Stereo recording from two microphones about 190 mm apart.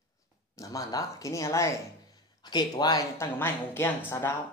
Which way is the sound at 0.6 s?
15° left (ahead or behind).